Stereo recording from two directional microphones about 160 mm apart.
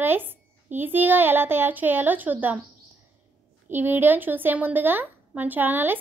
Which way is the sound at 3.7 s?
15° right (ahead or behind).